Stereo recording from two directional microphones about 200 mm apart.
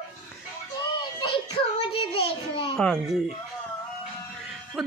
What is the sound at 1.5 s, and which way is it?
Child singing, 30° left (ahead or behind).